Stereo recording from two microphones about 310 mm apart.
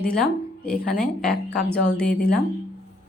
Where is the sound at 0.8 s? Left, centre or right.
Left.